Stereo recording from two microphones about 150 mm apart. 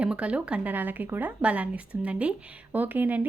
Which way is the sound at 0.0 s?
10° right (ahead or behind).